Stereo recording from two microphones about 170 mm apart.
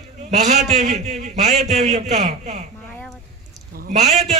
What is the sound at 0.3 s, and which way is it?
A man's voice, 40° right (ahead or behind).